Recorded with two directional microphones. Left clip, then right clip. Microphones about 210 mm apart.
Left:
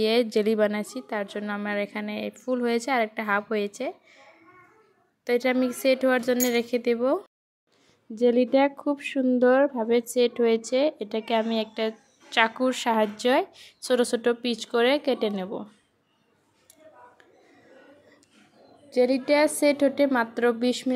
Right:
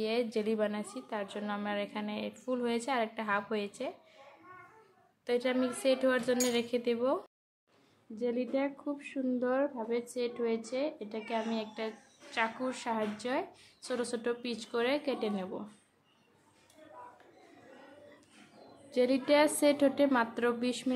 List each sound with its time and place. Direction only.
0.0 s a woman's voice: 35° left (ahead or behind)
5.2 s speech: 35° left (ahead or behind)
18.9 s a woman's voice: 20° left (ahead or behind)